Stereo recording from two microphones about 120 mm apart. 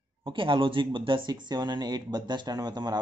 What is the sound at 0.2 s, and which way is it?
Speech, 45° right (ahead or behind).